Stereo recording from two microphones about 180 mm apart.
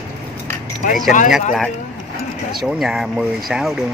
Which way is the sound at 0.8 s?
45° left (ahead or behind).